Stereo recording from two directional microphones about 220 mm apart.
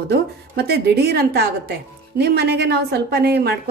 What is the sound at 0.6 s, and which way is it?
A woman's voice, 50° right (ahead or behind).